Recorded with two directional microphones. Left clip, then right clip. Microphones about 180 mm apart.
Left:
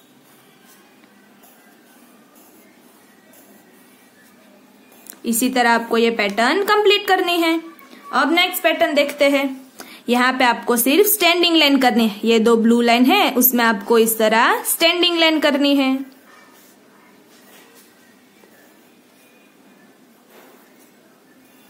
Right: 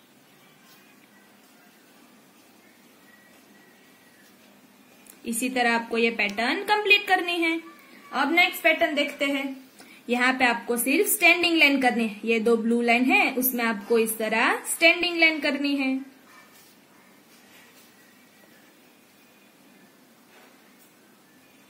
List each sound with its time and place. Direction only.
5.5 s a woman's voice: 50° left (ahead or behind)
8.1 s a woman's voice: 35° left (ahead or behind); by 15.9 s 50° left (ahead or behind)